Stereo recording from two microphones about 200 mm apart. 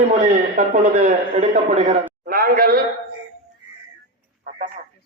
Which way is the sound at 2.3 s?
45° right (ahead or behind).